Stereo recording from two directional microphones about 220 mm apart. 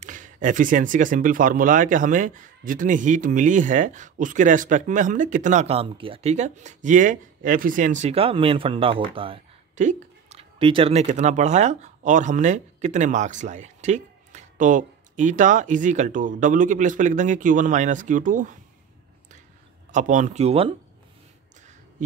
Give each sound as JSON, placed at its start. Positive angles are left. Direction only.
{"t": 0.0, "sound": "speech", "side_deg": -35}
{"t": 19.9, "sound": "speech", "side_deg": -35}